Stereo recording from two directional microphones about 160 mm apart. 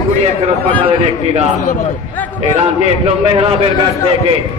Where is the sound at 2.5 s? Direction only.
40° right (ahead or behind).